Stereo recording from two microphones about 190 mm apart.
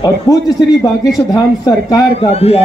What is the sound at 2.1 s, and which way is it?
Speech, 30° left (ahead or behind).